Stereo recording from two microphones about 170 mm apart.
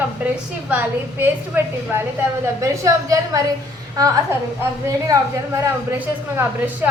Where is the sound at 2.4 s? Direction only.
20° right (ahead or behind).